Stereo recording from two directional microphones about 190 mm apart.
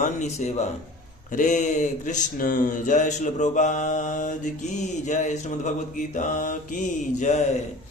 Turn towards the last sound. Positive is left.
turn(degrees=40)  # may be behind; listen again after turning